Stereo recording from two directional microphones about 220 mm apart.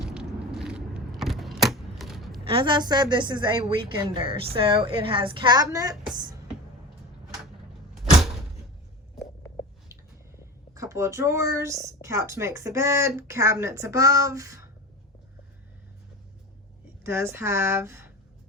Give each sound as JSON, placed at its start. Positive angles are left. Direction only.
{"t": 0.0, "sound": "a sound", "side_deg": -5}
{"t": 2.5, "sound": "a woman's voice", "side_deg": -25}
{"t": 10.8, "sound": "speech", "side_deg": -15}
{"t": 17.0, "sound": "speech", "side_deg": -10}